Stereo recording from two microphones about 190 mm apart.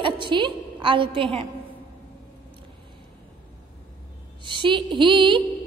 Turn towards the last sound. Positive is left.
turn(degrees=-25)  # may be behind; listen again after turning